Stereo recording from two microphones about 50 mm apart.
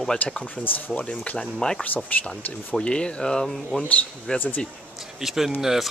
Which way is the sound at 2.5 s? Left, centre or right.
Left.